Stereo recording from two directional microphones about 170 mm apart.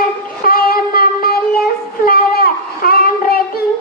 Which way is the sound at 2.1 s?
60° left (ahead or behind).